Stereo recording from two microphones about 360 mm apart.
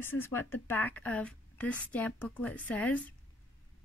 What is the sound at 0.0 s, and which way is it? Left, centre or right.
A woman's voice, centre.